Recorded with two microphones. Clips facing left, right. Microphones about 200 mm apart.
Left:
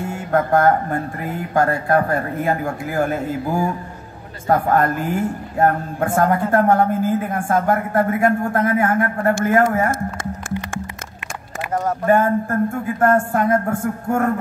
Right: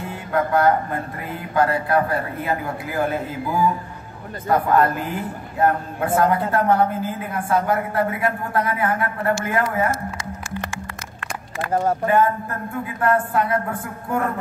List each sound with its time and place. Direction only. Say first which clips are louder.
0.1 s speech: left 3 dB; 45° left (ahead or behind)
12.1 s speech: left 7 dB; 45° left (ahead or behind)